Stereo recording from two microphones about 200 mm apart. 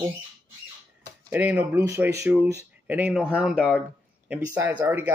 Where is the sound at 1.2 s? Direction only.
10° right (ahead or behind).